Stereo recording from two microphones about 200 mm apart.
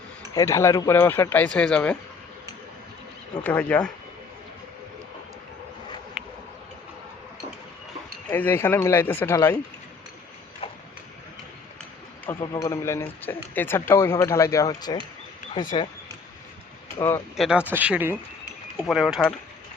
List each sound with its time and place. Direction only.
0.3 s speech: 15° left (ahead or behind)
3.4 s speech: 10° left (ahead or behind)
6.2 s a sound: 5° right (ahead or behind)
8.3 s speech: 10° left (ahead or behind)
10.6 s a sound: 25° left (ahead or behind)
12.4 s speech: 15° left (ahead or behind)
17.0 s speech: 15° left (ahead or behind)
17.3 s speech: centre (ahead or behind)
18.9 s a sound: centre (ahead or behind)